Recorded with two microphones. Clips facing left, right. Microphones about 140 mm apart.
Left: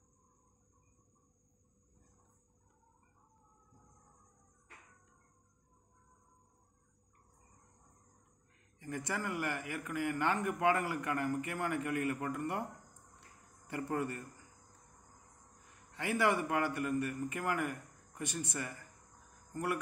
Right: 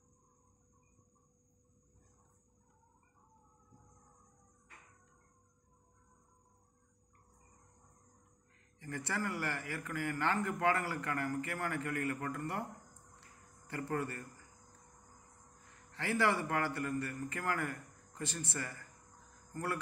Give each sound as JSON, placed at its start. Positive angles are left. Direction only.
{"t": 8.7, "sound": "a man's voice", "side_deg": 15}
{"t": 13.7, "sound": "a man's voice", "side_deg": 20}
{"t": 15.9, "sound": "a man's voice", "side_deg": 15}